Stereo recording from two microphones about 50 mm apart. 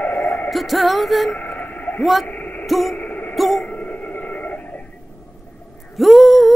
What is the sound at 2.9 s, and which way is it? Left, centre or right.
Music, left.